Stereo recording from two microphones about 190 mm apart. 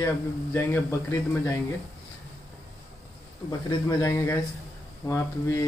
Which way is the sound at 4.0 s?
15° left (ahead or behind).